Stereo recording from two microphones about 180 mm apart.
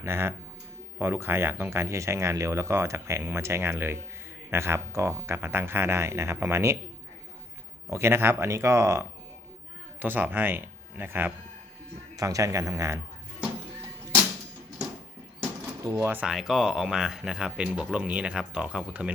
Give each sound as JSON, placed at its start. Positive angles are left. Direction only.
{"t": 0.0, "sound": "speech", "side_deg": -15}
{"t": 7.9, "sound": "speech", "side_deg": -15}
{"t": 15.8, "sound": "speech", "side_deg": -15}